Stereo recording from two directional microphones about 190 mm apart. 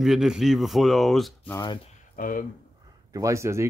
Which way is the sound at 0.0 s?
Centre (ahead or behind).